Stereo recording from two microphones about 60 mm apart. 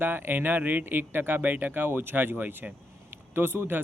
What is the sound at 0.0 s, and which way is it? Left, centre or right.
Speech, right.